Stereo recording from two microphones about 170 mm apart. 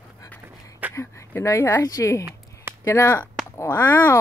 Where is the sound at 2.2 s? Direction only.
15° right (ahead or behind).